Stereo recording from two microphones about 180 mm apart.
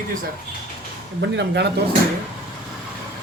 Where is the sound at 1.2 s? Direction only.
70° right (ahead or behind).